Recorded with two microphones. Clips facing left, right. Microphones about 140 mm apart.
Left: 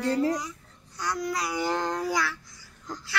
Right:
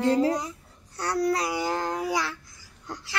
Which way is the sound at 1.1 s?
30° right (ahead or behind).